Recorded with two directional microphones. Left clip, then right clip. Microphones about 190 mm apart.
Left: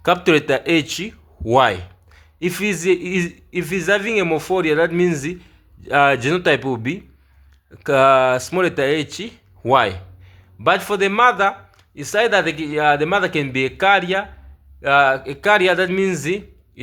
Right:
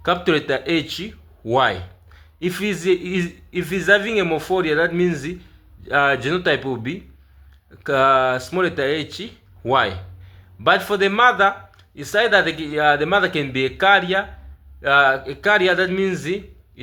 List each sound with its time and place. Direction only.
0.0 s speech: 35° left (ahead or behind)